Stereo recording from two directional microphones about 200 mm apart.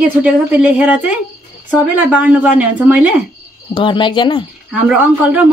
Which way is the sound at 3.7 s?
25° left (ahead or behind).